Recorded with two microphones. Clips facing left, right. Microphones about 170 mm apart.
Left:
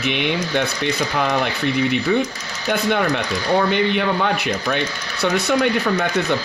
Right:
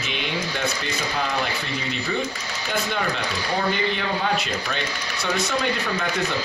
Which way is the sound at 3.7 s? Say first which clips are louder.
Left 6 dB; 65° left (ahead or behind).